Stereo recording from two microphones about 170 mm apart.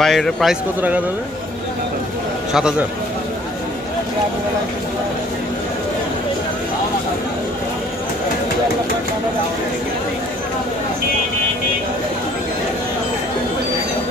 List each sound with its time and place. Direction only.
0.0 s a man's voice: centre (ahead or behind)